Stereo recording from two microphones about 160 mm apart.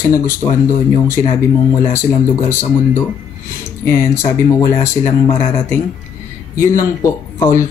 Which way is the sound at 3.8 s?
15° left (ahead or behind).